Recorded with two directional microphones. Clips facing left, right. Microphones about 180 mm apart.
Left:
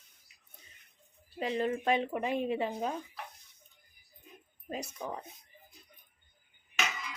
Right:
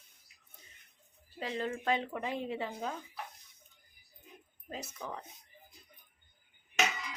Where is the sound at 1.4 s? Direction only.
20° left (ahead or behind).